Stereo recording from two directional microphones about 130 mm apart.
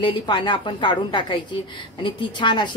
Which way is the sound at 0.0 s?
40° left (ahead or behind).